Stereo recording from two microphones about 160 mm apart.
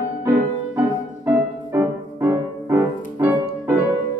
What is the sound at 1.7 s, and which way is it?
Music, 15° right (ahead or behind).